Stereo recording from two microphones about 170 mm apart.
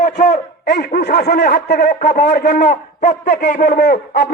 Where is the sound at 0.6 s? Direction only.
65° left (ahead or behind).